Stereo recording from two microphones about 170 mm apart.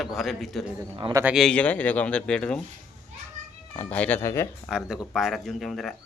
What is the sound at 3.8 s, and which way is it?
Speech, 10° left (ahead or behind).